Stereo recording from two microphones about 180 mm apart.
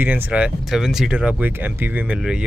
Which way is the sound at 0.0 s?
10° right (ahead or behind).